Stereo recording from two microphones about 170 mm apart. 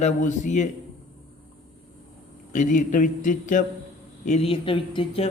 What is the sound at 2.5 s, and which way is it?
A man's voice, 45° left (ahead or behind).